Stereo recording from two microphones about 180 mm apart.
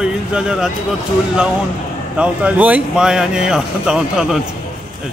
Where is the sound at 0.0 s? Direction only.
5° right (ahead or behind).